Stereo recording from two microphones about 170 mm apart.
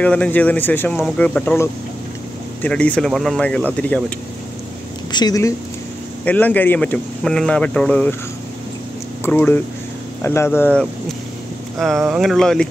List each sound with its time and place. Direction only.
0.0 s speech: 5° left (ahead or behind)
5.1 s speech: 20° left (ahead or behind)
6.2 s speech: 10° left (ahead or behind)
9.2 s speech: 10° left (ahead or behind)